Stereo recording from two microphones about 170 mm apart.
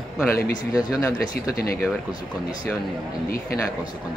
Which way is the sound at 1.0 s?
20° left (ahead or behind).